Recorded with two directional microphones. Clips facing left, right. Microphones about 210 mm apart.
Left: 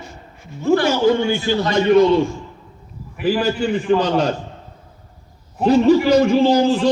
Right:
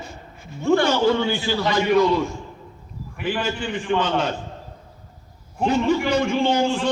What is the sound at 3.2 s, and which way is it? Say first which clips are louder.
A man's voice: left 7 dB; 40° left (ahead or behind).